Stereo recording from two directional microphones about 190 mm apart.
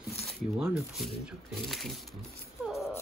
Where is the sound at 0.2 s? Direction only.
Centre (ahead or behind).